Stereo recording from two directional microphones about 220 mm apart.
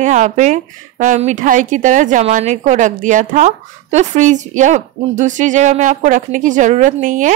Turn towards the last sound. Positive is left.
turn(degrees=-35)  # may be behind; listen again after turning